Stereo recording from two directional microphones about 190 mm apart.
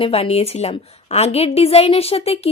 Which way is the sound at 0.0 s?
30° left (ahead or behind).